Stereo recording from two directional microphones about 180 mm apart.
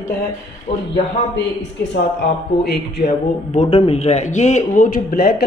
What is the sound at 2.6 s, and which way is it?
Speech, 65° left (ahead or behind).